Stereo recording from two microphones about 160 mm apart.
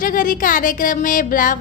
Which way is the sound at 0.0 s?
60° left (ahead or behind).